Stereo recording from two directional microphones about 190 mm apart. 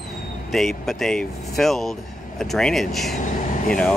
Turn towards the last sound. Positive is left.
turn(degrees=40)  # may be behind; listen again after turning